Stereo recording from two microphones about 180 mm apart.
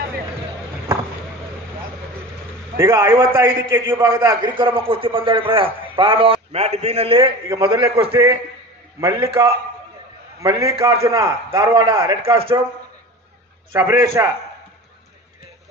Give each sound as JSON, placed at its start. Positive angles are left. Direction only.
{"t": 2.8, "sound": "a man's voice", "side_deg": -15}
{"t": 3.8, "sound": "a man's voice", "side_deg": -30}
{"t": 4.2, "sound": "a man's voice", "side_deg": -15}
{"t": 4.5, "sound": "a man's voice", "side_deg": -30}
{"t": 8.1, "sound": "a man's voice", "side_deg": -15}
{"t": 10.4, "sound": "a man's voice", "side_deg": -20}
{"t": 12.2, "sound": "speech", "side_deg": -30}
{"t": 13.7, "sound": "a man's voice", "side_deg": -15}